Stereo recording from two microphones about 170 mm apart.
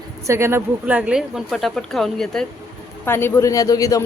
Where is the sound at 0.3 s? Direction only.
15° right (ahead or behind); by 2.5 s 5° left (ahead or behind).